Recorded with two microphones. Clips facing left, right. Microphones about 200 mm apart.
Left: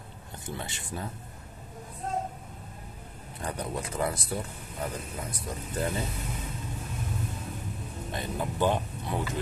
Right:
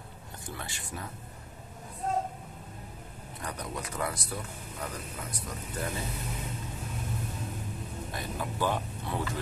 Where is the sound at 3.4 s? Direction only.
25° left (ahead or behind).